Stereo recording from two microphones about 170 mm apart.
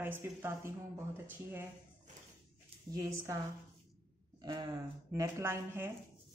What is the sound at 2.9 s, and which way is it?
Speech, 20° right (ahead or behind).